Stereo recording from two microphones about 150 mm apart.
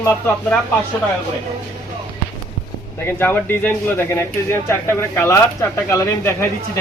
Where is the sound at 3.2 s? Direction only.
15° left (ahead or behind).